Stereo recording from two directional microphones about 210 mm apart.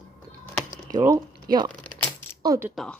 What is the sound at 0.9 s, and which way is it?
Speech, 15° right (ahead or behind).